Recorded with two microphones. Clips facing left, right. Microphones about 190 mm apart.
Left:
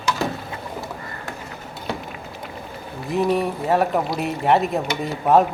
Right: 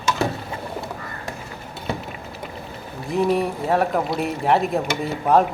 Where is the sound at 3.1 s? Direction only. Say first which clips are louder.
Even; centre (ahead or behind).